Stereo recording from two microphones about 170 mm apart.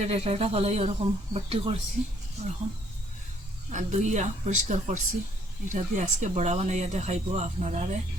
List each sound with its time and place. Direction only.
0.0 s speech: 40° right (ahead or behind)
3.7 s speech: 45° right (ahead or behind)